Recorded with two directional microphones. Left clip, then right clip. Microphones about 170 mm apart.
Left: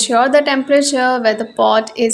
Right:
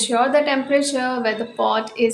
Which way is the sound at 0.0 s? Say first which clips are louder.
Left 5 dB; 35° left (ahead or behind).